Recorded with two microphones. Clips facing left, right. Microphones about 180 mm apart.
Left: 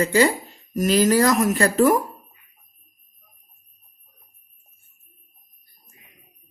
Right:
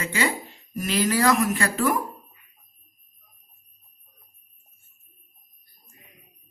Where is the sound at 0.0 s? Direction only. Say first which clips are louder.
Left 8 dB; 40° left (ahead or behind).